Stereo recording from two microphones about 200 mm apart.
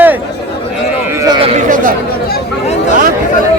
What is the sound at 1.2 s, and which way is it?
Speech, 25° right (ahead or behind).